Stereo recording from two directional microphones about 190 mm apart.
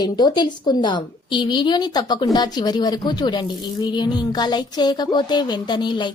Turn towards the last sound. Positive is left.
turn(degrees=25)  # may be behind; listen again after turning